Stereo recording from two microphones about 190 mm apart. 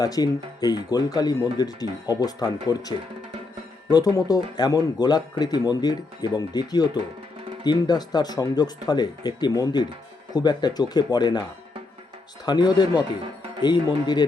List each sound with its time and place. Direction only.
0.0 s speech: 20° left (ahead or behind)
12.5 s speech: 20° left (ahead or behind)